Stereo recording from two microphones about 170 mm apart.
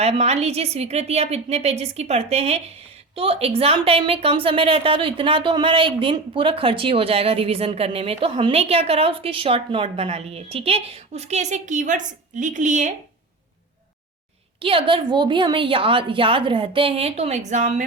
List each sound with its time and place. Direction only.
0.0 s a woman's voice: 40° right (ahead or behind)
14.6 s a woman's voice: 30° right (ahead or behind)